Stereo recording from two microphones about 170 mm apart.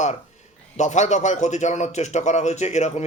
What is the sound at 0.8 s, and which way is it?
Speech, 45° left (ahead or behind).